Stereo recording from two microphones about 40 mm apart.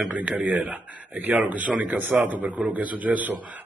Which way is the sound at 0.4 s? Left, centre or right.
Right.